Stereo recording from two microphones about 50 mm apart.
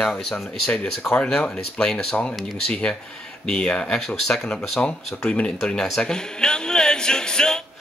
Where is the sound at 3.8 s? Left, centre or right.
Centre.